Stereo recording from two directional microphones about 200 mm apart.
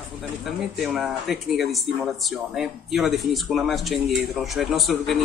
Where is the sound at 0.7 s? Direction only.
Centre (ahead or behind).